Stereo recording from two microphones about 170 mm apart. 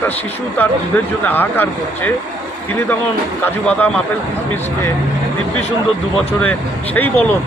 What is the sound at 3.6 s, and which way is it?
Speech, 5° left (ahead or behind).